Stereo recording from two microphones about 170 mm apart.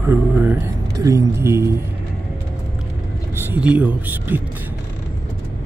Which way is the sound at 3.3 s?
10° right (ahead or behind).